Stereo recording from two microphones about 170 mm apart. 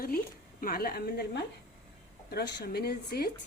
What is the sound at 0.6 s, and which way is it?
A woman's voice, 60° left (ahead or behind).